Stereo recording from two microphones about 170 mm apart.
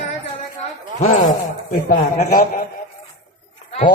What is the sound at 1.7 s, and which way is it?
Speech, 60° left (ahead or behind).